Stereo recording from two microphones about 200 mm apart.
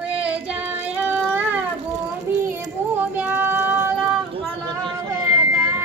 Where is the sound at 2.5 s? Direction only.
10° right (ahead or behind).